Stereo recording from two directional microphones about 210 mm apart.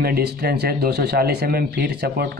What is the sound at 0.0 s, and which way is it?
Speech, 50° right (ahead or behind).